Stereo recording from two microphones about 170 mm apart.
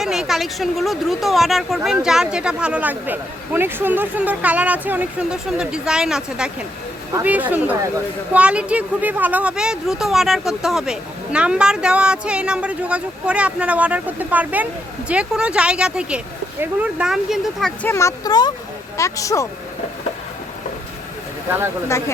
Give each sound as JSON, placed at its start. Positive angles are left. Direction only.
{"t": 0.0, "sound": "speech", "side_deg": 0}
{"t": 17.8, "sound": "speech", "side_deg": 15}
{"t": 21.8, "sound": "speech", "side_deg": 15}